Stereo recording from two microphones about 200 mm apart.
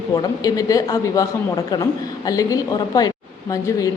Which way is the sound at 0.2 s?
20° left (ahead or behind).